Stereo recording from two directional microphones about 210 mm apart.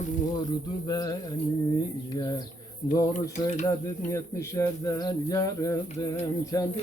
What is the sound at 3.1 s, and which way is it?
Speech, 35° left (ahead or behind).